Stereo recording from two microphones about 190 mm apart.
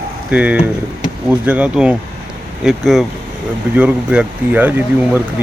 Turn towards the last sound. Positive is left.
turn(degrees=-10)  # may be behind; listen again after turning